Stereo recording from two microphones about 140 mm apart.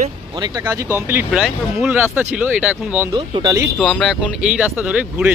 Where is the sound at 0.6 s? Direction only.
15° right (ahead or behind).